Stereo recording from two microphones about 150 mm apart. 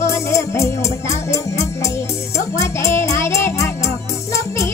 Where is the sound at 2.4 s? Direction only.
20° left (ahead or behind).